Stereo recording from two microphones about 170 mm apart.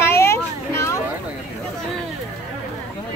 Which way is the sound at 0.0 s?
15° left (ahead or behind).